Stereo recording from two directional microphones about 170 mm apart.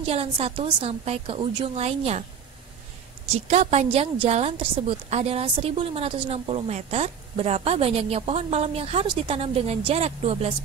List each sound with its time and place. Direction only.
0.0 s a woman's voice: 35° right (ahead or behind)
3.3 s a woman's voice: 40° right (ahead or behind)